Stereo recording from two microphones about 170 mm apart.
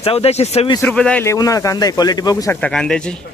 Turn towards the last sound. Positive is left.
turn(degrees=5)  # may be behind; listen again after turning